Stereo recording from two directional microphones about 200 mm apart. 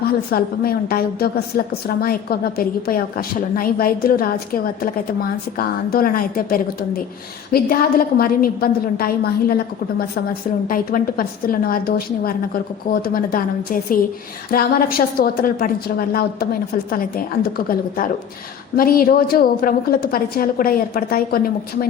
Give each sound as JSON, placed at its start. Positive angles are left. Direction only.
{"t": 0.0, "sound": "a woman's voice", "side_deg": 50}
{"t": 10.7, "sound": "a woman's voice", "side_deg": 45}